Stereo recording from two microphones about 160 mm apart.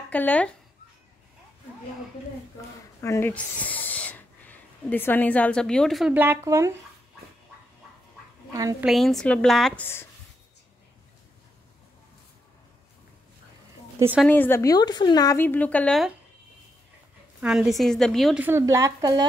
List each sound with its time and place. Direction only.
0.1 s a woman's voice: 10° left (ahead or behind)
3.0 s speech: 15° left (ahead or behind); by 6.1 s centre (ahead or behind)
6.1 s speech: 15° right (ahead or behind)
8.8 s speech: centre (ahead or behind)
13.9 s a woman's voice: 15° right (ahead or behind)
14.2 s a woman's voice: 10° left (ahead or behind)
17.4 s speech: 5° right (ahead or behind)
18.4 s speech: 15° right (ahead or behind)